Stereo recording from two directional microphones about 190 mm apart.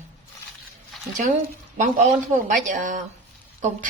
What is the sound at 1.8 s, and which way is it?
A woman's voice, 40° right (ahead or behind).